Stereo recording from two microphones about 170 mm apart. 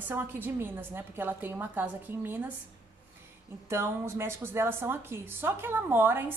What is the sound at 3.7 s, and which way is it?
Speech, 15° right (ahead or behind).